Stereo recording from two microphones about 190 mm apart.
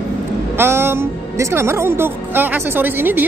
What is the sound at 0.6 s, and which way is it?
Speech, 10° right (ahead or behind).